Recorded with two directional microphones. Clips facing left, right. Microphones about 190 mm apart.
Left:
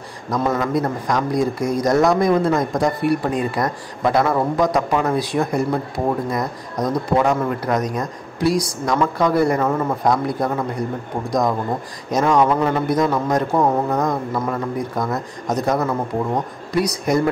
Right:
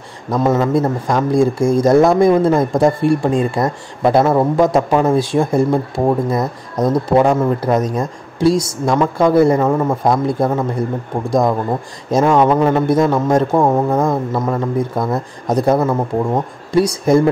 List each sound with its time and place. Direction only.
0.3 s speech: 25° right (ahead or behind)